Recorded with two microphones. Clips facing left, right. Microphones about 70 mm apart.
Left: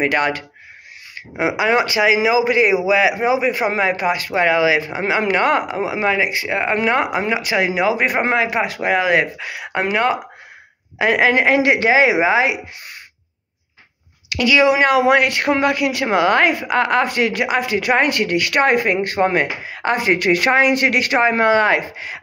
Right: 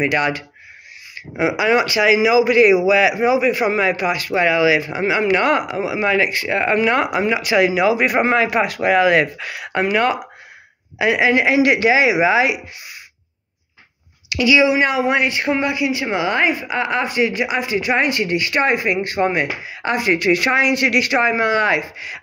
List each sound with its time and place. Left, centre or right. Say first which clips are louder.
0.0 s a man's voice: even; left
6.1 s a man's voice: right 1 dB; centre
11.0 s a man's voice: left 1 dB; left
14.3 s speech: even; left
14.8 s speech: left 3 dB; left